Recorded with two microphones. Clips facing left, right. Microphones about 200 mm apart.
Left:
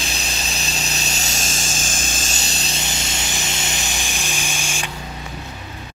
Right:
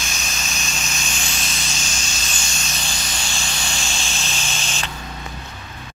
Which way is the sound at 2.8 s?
25° left (ahead or behind).